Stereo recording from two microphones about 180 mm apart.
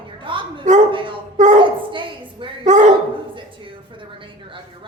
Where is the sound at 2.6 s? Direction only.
45° right (ahead or behind).